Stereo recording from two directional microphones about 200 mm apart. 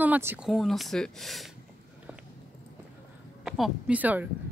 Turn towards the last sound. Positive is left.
turn(degrees=-10)  # may be behind; listen again after turning